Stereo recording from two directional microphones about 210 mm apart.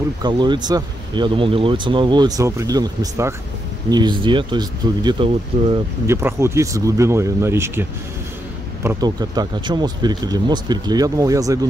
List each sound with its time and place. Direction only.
0.2 s speech: 20° right (ahead or behind)
6.0 s speech: 10° right (ahead or behind)
8.8 s speech: 20° right (ahead or behind)